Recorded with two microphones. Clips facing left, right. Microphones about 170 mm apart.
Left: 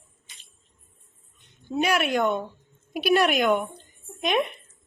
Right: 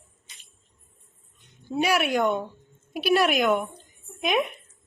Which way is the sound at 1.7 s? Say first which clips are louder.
Even; 10° right (ahead or behind).